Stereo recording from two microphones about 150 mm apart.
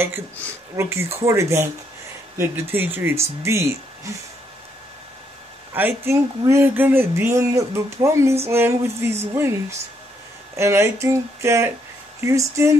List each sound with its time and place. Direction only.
0.7 s speech: 20° right (ahead or behind)
5.7 s speech: 15° right (ahead or behind)